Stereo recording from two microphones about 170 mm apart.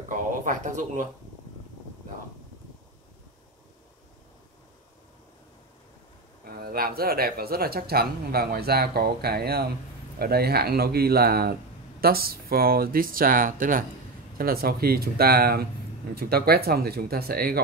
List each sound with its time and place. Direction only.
0.1 s a sound: 50° right (ahead or behind)
6.4 s speech: 65° right (ahead or behind)
14.4 s speech: 65° right (ahead or behind)